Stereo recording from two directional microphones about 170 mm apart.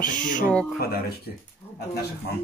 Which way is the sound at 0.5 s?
Centre (ahead or behind).